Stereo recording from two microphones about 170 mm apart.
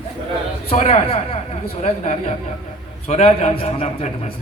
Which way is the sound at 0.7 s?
40° left (ahead or behind).